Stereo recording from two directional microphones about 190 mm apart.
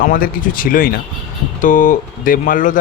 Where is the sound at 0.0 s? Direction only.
45° left (ahead or behind).